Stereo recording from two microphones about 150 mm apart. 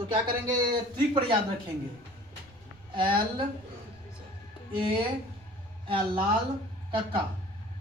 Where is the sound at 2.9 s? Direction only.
35° right (ahead or behind).